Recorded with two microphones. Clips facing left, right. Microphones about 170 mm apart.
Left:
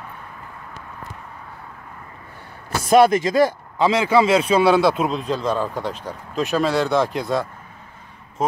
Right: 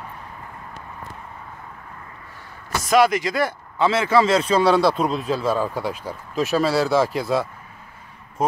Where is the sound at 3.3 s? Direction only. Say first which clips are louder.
Left 6 dB; 15° left (ahead or behind); by 7.4 s 5° right (ahead or behind).